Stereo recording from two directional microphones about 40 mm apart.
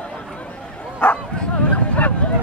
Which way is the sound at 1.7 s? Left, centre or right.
Left.